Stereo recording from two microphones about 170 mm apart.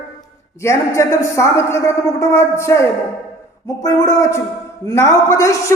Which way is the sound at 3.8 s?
20° left (ahead or behind).